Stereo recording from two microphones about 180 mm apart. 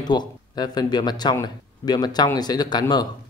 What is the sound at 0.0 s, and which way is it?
Speech, 25° left (ahead or behind).